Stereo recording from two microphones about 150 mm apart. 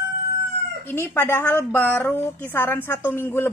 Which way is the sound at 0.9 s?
15° left (ahead or behind).